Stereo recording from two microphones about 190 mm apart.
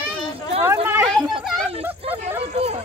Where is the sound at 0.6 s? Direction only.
15° right (ahead or behind).